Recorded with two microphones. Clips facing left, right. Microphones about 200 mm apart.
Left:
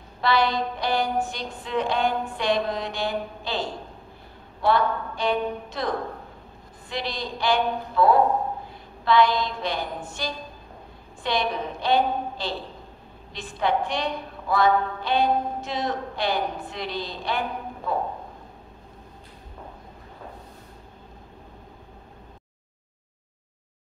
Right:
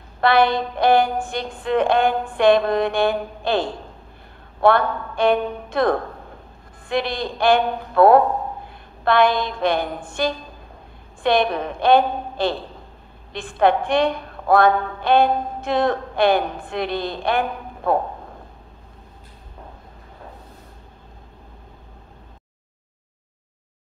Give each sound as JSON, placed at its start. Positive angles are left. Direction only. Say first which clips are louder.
{"t": 0.2, "sound": "a woman's voice", "louder": "right 6 dB", "side_deg": -55}